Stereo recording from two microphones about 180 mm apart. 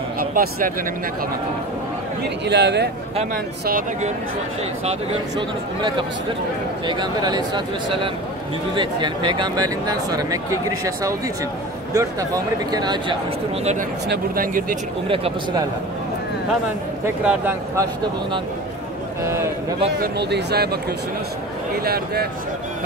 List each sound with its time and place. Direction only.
0.2 s speech: 55° right (ahead or behind)
2.4 s a man's voice: 70° right (ahead or behind)
5.8 s speech: 25° right (ahead or behind)
14.0 s speech: 60° right (ahead or behind)
17.0 s speech: 15° right (ahead or behind)
19.2 s speech: 15° right (ahead or behind)
19.9 s speech: 70° right (ahead or behind)
21.8 s speech: 60° right (ahead or behind)